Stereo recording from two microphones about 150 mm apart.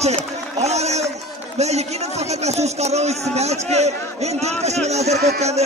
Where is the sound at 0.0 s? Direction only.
45° right (ahead or behind).